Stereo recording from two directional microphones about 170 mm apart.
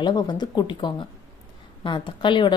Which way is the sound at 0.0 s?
25° left (ahead or behind).